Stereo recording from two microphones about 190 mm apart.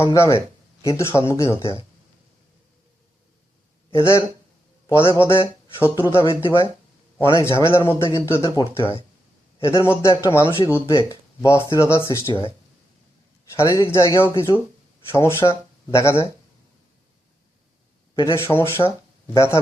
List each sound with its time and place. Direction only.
0.0 s speech: 15° left (ahead or behind)
5.0 s speech: 15° left (ahead or behind)
13.5 s speech: 15° left (ahead or behind)
18.1 s speech: 20° left (ahead or behind)